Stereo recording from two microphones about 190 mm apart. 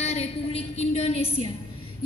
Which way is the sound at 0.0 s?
35° left (ahead or behind).